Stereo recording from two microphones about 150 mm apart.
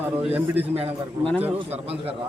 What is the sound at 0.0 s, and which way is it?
Speech, 10° right (ahead or behind).